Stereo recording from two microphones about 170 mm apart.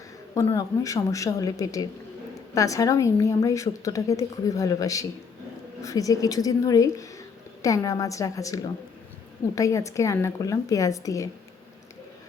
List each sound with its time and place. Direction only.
0.5 s a woman's voice: 20° left (ahead or behind)